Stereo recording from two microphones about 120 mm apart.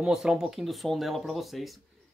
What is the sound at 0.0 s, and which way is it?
Speech, 5° right (ahead or behind).